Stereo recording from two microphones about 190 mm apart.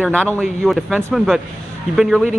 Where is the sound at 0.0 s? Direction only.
5° left (ahead or behind).